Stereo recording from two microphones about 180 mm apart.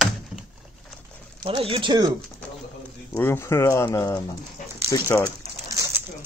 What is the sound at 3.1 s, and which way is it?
Speech, 15° left (ahead or behind).